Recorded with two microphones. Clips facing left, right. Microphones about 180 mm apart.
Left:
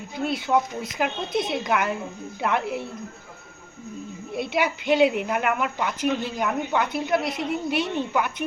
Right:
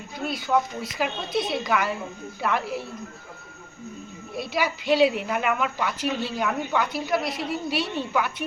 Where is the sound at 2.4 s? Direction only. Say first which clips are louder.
Left 2 dB; 20° left (ahead or behind).